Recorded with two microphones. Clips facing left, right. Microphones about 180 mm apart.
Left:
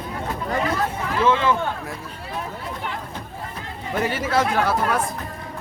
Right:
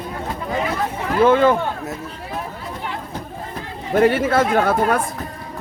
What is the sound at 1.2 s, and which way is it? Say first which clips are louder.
Speech: right 6 dB; 50° right (ahead or behind).